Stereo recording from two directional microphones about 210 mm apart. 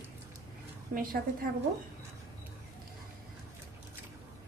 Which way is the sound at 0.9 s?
45° right (ahead or behind).